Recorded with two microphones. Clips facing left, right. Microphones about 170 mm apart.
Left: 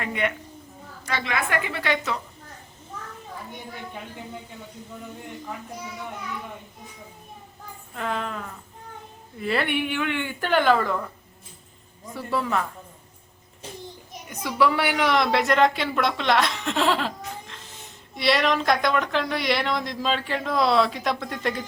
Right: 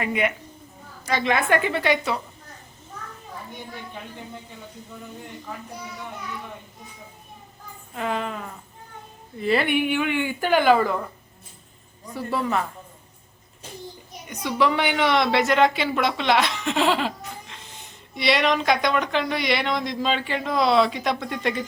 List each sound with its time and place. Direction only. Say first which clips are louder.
0.0 s a woman's voice: right 3 dB; 10° right (ahead or behind)
1.1 s a woman's voice: right 5 dB; 25° right (ahead or behind)
7.9 s a woman's voice: right 2 dB; 10° right (ahead or behind)
12.3 s a woman's voice: right 1 dB; 10° right (ahead or behind)
14.4 s speech: even; 5° left (ahead or behind)